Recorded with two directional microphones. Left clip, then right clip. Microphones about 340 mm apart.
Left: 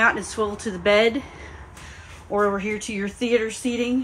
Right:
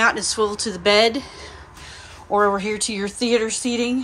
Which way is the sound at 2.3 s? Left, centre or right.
Centre.